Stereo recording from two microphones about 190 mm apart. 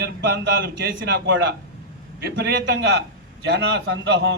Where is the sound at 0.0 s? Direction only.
65° right (ahead or behind).